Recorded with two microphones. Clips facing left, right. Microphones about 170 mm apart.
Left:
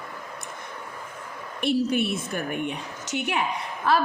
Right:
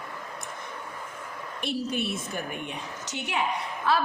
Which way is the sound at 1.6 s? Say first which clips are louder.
Left 7 dB; 60° left (ahead or behind).